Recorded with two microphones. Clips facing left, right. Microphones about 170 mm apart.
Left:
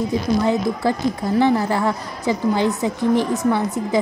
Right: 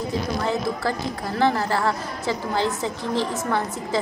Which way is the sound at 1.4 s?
15° left (ahead or behind).